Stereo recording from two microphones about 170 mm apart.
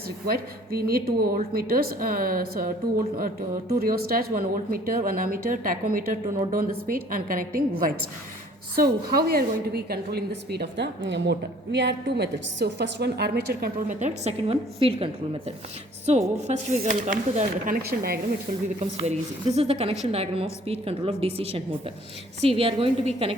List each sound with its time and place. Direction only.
0.3 s speech: 65° right (ahead or behind)
3.8 s a woman's voice: 60° right (ahead or behind)
13.8 s a woman's voice: 40° right (ahead or behind); by 18.2 s 65° right (ahead or behind)
18.8 s a woman's voice: 40° right (ahead or behind)